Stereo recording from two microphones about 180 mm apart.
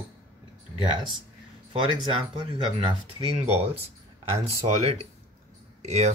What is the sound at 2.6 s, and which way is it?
Speech, 30° right (ahead or behind).